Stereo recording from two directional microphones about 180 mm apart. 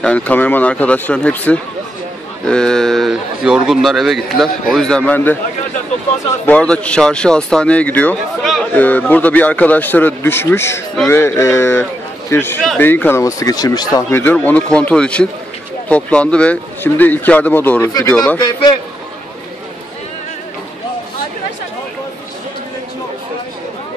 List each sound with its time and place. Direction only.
0.0 s speech: 5° left (ahead or behind)
6.4 s speech: 5° left (ahead or behind)
18.4 s a man's voice: 20° left (ahead or behind)